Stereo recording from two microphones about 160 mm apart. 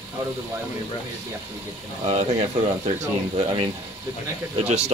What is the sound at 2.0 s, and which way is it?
Speech, 40° right (ahead or behind).